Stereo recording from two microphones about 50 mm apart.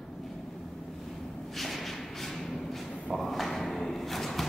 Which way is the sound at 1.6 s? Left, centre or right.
Centre.